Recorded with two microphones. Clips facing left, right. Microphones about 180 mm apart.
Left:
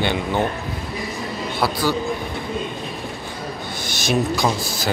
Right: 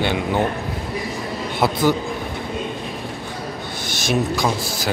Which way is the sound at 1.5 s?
20° right (ahead or behind).